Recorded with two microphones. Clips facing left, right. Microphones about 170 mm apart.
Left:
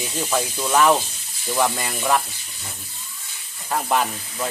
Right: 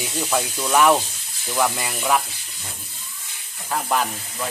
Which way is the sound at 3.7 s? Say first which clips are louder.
Left 1 dB; 5° left (ahead or behind).